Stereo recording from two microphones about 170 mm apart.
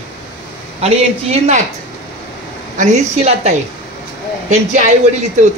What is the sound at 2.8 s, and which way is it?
Speech, 45° right (ahead or behind).